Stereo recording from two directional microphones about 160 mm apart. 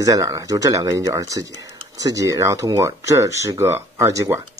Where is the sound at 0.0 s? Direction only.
20° right (ahead or behind).